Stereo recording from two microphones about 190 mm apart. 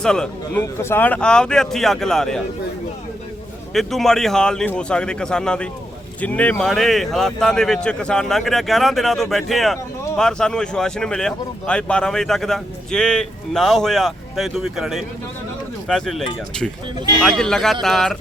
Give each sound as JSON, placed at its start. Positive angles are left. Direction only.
{"t": 0.0, "sound": "speech", "side_deg": 5}
{"t": 3.8, "sound": "speech", "side_deg": 0}